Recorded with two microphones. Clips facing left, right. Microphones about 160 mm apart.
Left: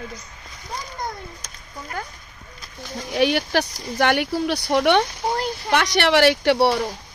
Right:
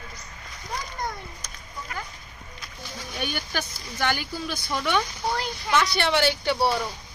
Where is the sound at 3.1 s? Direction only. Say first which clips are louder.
Left 12 dB; 75° left (ahead or behind).